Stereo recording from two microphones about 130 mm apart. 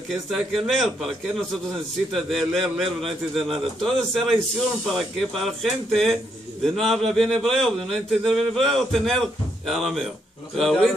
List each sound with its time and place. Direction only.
0.1 s speech: centre (ahead or behind)